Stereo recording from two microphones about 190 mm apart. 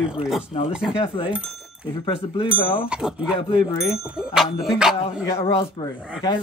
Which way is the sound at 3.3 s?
25° left (ahead or behind).